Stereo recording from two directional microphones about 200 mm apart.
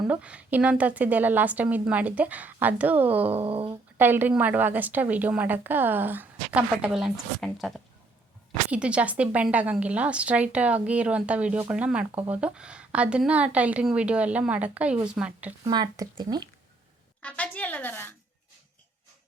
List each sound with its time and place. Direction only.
0.1 s a woman's voice: 5° right (ahead or behind)
3.4 s speech: 30° right (ahead or behind)
3.7 s a woman's voice: 10° right (ahead or behind)
8.7 s a woman's voice: 5° right (ahead or behind)
15.6 s speech: 20° right (ahead or behind)
17.2 s speech: 5° left (ahead or behind)